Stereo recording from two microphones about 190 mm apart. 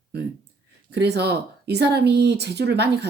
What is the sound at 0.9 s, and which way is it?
Speech, 60° right (ahead or behind).